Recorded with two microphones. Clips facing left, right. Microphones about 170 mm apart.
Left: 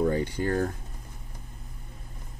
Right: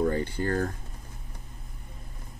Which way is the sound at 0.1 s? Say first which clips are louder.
Left 1 dB; 15° left (ahead or behind).